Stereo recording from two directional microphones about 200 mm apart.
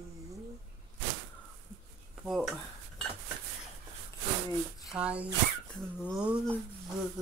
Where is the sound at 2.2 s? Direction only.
Centre (ahead or behind).